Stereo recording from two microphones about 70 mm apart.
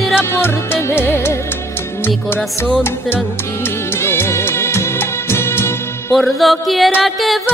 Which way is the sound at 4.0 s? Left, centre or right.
Left.